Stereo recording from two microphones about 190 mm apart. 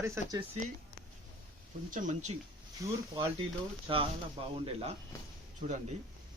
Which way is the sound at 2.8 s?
20° right (ahead or behind).